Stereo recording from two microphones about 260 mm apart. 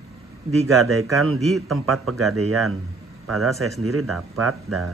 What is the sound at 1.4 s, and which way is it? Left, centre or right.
Speech, centre.